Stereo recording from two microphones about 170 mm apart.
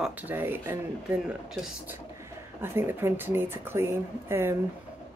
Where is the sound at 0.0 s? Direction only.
10° right (ahead or behind).